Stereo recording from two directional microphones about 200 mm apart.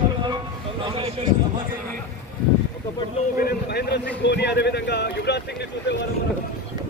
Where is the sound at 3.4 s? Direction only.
50° left (ahead or behind).